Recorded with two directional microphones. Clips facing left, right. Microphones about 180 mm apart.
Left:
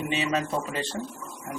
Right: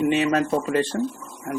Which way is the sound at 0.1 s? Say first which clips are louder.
Right 7 dB; 55° right (ahead or behind).